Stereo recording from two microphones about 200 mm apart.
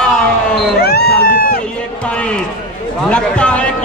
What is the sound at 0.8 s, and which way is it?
Speech, 50° left (ahead or behind).